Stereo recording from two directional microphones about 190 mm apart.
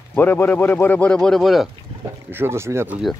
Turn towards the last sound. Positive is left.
turn(degrees=-5)  # may be behind; listen again after turning